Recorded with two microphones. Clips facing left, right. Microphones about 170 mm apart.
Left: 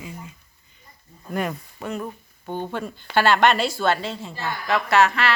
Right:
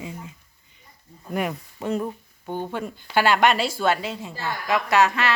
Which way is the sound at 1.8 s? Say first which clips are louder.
Right 4 dB; 30° right (ahead or behind).